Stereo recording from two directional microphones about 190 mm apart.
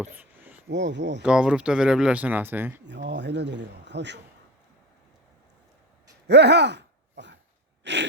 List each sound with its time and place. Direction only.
0.0 s a sound: 10° right (ahead or behind)
0.7 s speech: 70° right (ahead or behind)
1.2 s speech: 5° right (ahead or behind)
2.8 s speech: 70° right (ahead or behind)
6.2 s gasp: 65° right (ahead or behind)
7.9 s speech: 65° right (ahead or behind)